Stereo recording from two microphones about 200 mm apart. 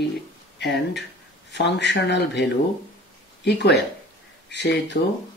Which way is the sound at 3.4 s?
60° left (ahead or behind).